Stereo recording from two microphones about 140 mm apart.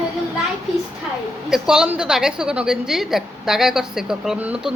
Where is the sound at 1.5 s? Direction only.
5° right (ahead or behind).